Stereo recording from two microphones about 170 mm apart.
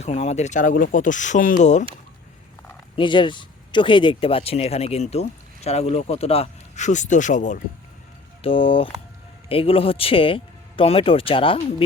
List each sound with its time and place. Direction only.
0.0 s speech: 40° left (ahead or behind)
2.9 s speech: 30° left (ahead or behind); by 7.6 s 45° left (ahead or behind)
8.4 s speech: 30° left (ahead or behind)